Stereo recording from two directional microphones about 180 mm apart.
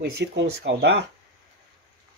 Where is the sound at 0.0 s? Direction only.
70° right (ahead or behind).